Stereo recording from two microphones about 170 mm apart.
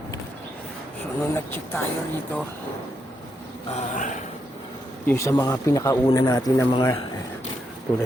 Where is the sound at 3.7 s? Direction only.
45° left (ahead or behind).